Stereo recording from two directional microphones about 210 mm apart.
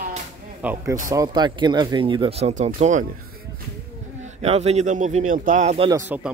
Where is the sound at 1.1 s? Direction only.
20° right (ahead or behind); by 3.1 s 35° right (ahead or behind).